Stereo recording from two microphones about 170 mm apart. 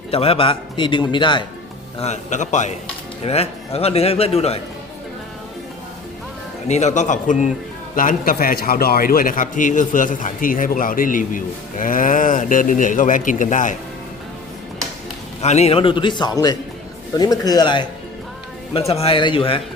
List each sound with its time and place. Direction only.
0.1 s a man's voice: 35° left (ahead or behind)
2.0 s a man's voice: 45° left (ahead or behind)
6.7 s a man's voice: 45° left (ahead or behind)
15.4 s a man's voice: 40° left (ahead or behind)